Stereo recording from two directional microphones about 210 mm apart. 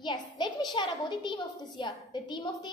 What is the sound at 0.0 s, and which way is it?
A woman's voice, 20° left (ahead or behind).